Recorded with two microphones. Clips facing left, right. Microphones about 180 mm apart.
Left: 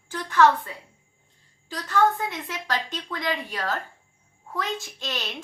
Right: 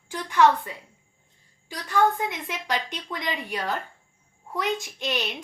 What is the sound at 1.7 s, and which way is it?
A woman's voice, 15° right (ahead or behind).